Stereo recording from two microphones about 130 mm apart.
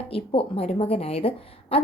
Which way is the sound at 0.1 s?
45° left (ahead or behind).